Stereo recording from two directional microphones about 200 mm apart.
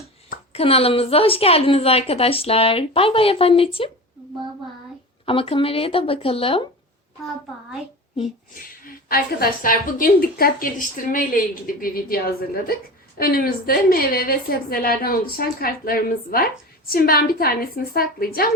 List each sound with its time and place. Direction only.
0.5 s a woman's voice: 30° left (ahead or behind)
5.2 s a woman's voice: 25° left (ahead or behind)
8.5 s a woman's voice: 45° left (ahead or behind)